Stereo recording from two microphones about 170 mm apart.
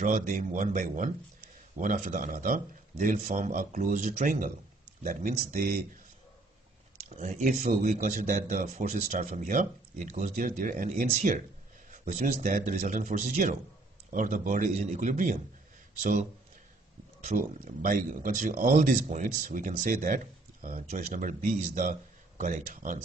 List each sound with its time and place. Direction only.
0.0 s speech: 50° right (ahead or behind)
7.2 s speech: 45° right (ahead or behind)